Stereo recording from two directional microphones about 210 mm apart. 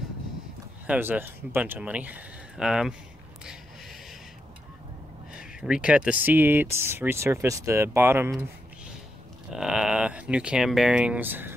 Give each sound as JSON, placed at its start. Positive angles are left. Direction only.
{"t": 0.8, "sound": "speech", "side_deg": -10}
{"t": 5.3, "sound": "speech", "side_deg": -5}